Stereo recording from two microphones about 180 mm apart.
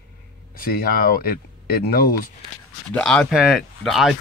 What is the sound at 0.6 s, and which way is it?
Speech, 55° left (ahead or behind).